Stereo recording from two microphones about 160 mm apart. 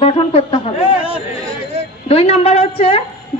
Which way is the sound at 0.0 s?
35° left (ahead or behind).